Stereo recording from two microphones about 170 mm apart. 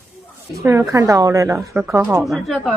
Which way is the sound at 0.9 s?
20° right (ahead or behind).